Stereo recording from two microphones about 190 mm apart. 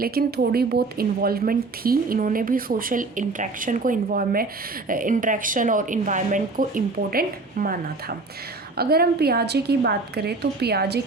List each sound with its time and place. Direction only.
0.0 s a woman's voice: 55° right (ahead or behind)